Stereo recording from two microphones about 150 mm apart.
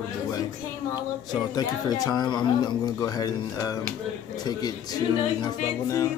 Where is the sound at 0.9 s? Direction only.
25° left (ahead or behind).